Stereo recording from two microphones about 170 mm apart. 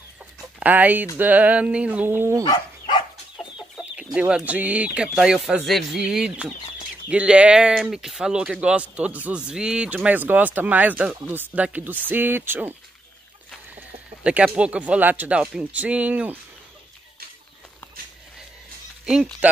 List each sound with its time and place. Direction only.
0.6 s speech: 10° right (ahead or behind)
2.4 s dog: 25° left (ahead or behind)
3.7 s speech: 5° right (ahead or behind)
14.2 s speech: 10° right (ahead or behind)
19.4 s speech: 10° right (ahead or behind)